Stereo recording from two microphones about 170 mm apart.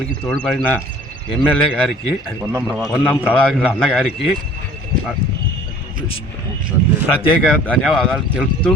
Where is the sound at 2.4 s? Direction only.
15° right (ahead or behind).